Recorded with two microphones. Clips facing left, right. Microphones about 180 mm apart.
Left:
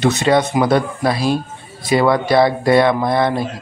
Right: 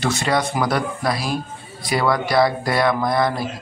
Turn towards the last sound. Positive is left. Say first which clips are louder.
# left 3 dB
turn(degrees=25)  # may be behind; listen again after turning